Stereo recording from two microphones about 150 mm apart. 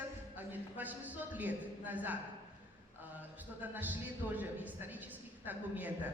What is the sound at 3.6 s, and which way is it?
A woman's voice, 10° right (ahead or behind).